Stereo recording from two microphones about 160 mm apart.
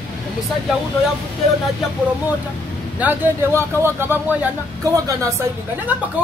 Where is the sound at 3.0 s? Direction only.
10° right (ahead or behind).